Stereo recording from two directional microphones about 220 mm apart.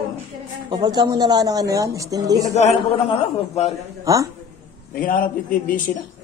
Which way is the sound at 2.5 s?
30° left (ahead or behind).